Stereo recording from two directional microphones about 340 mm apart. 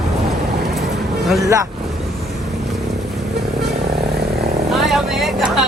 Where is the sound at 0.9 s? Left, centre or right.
Centre.